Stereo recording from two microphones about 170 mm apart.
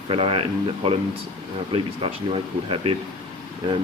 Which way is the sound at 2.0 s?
35° right (ahead or behind).